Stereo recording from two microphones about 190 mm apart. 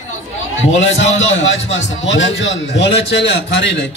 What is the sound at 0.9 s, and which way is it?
A man's voice, 75° left (ahead or behind).